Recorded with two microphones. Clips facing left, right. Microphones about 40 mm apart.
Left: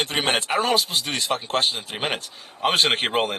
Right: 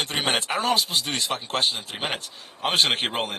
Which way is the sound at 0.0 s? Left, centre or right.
Centre.